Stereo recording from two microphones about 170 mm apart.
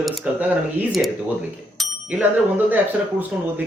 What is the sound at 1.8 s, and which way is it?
Bicycle bell, 5° right (ahead or behind).